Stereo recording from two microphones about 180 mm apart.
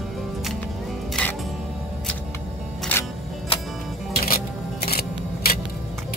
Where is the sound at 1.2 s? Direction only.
5° left (ahead or behind).